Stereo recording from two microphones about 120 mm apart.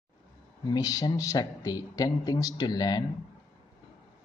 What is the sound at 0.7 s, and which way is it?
Speech, 35° left (ahead or behind).